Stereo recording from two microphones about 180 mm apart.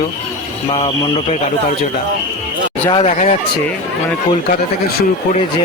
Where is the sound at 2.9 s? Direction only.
40° left (ahead or behind).